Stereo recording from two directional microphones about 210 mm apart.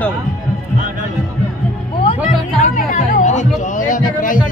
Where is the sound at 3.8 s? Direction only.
40° left (ahead or behind).